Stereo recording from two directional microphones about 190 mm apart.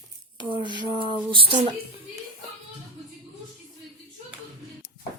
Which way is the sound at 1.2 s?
25° right (ahead or behind).